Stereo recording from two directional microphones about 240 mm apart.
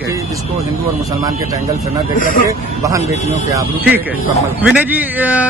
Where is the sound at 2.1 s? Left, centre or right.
Left.